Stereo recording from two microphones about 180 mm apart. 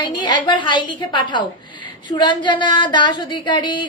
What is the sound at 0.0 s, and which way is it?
Speech, 25° left (ahead or behind).